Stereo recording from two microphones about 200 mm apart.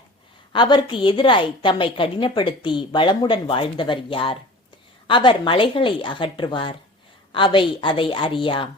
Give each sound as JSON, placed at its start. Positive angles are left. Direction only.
{"t": 0.5, "sound": "a woman's voice", "side_deg": 20}